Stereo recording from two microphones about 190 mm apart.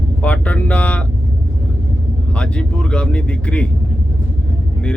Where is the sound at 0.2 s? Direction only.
5° left (ahead or behind).